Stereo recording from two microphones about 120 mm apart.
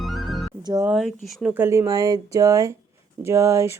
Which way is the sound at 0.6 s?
35° right (ahead or behind).